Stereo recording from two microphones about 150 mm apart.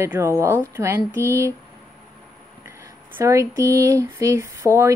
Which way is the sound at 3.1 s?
20° right (ahead or behind).